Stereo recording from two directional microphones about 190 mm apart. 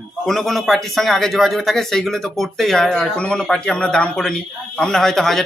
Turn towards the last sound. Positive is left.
turn(degrees=0)  # may be behind; listen again after turning